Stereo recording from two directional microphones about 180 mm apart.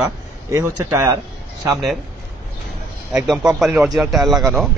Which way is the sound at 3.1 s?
5° right (ahead or behind).